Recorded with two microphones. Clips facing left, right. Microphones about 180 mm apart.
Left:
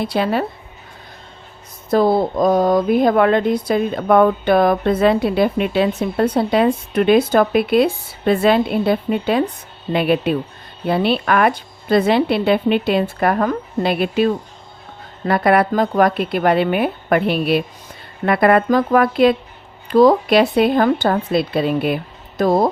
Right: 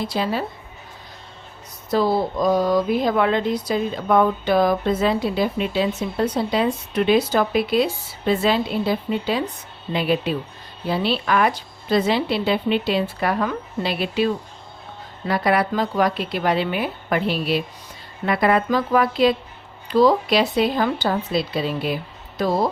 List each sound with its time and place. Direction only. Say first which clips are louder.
0.0 s speech: left 5 dB; 60° left (ahead or behind)
1.9 s speech: left 5 dB; 55° left (ahead or behind)